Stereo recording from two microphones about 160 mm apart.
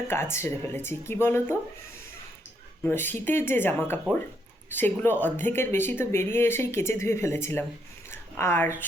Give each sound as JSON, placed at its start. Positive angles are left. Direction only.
{"t": 0.1, "sound": "speech", "side_deg": 15}
{"t": 2.8, "sound": "speech", "side_deg": 10}